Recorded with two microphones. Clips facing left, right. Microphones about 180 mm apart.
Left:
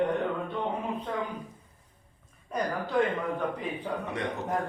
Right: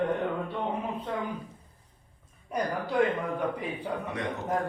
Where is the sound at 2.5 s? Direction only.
10° right (ahead or behind).